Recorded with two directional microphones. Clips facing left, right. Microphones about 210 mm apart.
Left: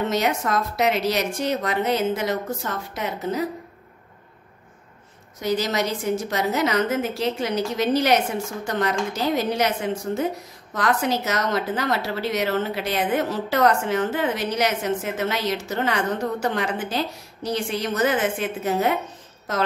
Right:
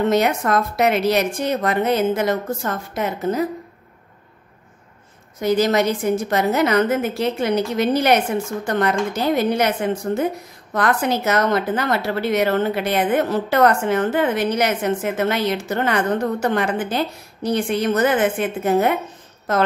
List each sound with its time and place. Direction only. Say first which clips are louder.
0.1 s a woman's voice: right 5 dB; 55° right (ahead or behind)
5.4 s a woman's voice: right 6 dB; 55° right (ahead or behind)